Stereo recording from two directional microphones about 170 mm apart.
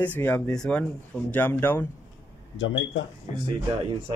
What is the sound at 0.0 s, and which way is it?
Speech, 10° left (ahead or behind).